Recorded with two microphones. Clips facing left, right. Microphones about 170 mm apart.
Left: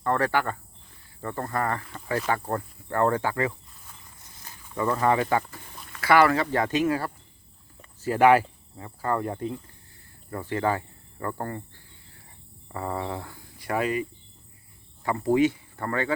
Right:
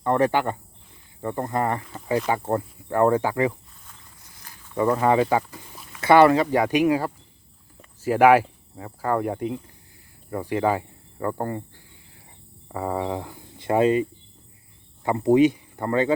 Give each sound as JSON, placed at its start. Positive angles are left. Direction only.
{"t": 0.0, "sound": "speech", "side_deg": -20}
{"t": 4.8, "sound": "speech", "side_deg": -15}
{"t": 7.8, "sound": "a sound", "side_deg": -10}
{"t": 8.8, "sound": "speech", "side_deg": -10}
{"t": 12.7, "sound": "speech", "side_deg": -15}